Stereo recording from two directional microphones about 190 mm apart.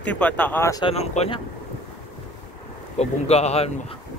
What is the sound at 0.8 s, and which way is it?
Speech, 35° left (ahead or behind).